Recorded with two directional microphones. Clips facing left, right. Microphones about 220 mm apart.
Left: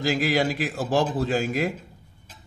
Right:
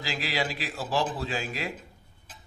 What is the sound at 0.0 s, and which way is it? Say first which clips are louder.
A man's voice: left 9 dB; 45° left (ahead or behind).